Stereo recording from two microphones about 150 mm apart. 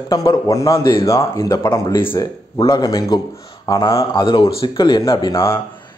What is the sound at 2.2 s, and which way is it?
Speech, 30° left (ahead or behind).